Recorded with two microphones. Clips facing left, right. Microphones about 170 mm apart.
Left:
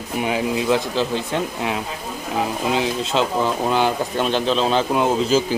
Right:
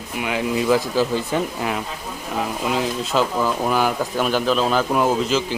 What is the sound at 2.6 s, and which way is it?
Speech, 25° left (ahead or behind).